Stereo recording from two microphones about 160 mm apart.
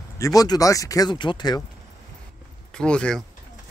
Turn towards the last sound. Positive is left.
turn(degrees=5)  # may be behind; listen again after turning